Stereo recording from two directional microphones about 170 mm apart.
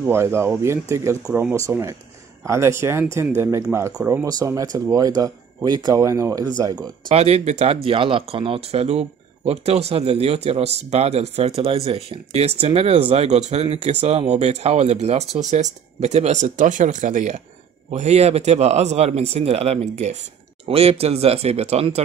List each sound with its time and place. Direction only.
0.0 s speech: 15° right (ahead or behind)
7.1 s speech: 40° right (ahead or behind)